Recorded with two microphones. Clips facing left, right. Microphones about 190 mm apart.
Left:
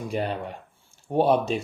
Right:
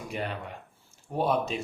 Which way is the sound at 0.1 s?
35° left (ahead or behind).